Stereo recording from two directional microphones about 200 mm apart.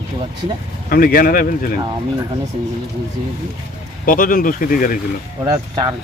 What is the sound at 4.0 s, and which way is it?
Speech, 45° left (ahead or behind).